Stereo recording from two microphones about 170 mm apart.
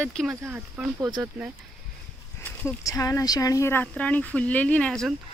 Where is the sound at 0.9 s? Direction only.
20° right (ahead or behind).